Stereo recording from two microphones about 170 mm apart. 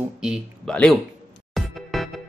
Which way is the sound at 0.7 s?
5° left (ahead or behind).